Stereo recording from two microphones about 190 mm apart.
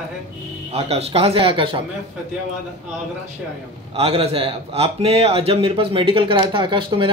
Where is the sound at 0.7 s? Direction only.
30° right (ahead or behind).